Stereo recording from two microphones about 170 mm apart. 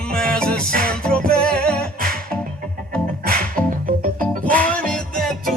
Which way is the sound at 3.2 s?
60° right (ahead or behind).